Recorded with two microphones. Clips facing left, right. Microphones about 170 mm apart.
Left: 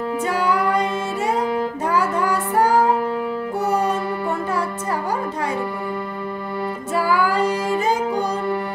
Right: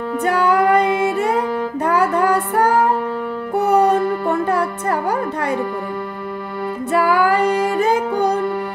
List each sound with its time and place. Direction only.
0.2 s music: 60° right (ahead or behind)
1.9 s child singing: 60° right (ahead or behind)
3.5 s music: 60° right (ahead or behind)
6.9 s music: 60° right (ahead or behind)